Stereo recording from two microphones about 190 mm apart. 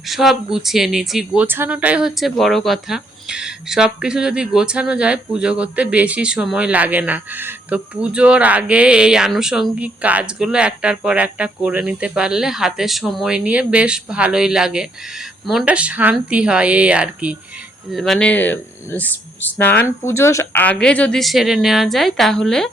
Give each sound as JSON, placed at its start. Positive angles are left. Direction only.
{"t": 0.1, "sound": "speech", "side_deg": 0}